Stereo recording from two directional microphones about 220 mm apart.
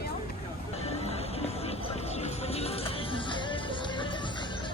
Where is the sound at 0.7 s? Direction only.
30° left (ahead or behind).